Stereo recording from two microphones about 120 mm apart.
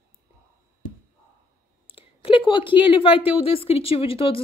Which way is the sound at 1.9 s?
50° left (ahead or behind).